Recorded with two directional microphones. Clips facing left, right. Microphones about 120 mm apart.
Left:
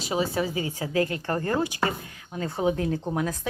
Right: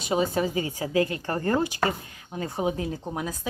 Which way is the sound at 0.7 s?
40° left (ahead or behind).